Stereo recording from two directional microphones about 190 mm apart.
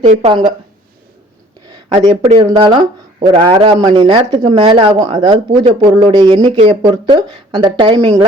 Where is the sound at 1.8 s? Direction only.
25° right (ahead or behind).